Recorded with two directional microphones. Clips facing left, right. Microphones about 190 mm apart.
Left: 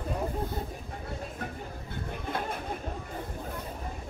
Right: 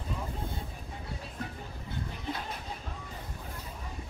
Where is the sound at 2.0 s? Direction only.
55° left (ahead or behind).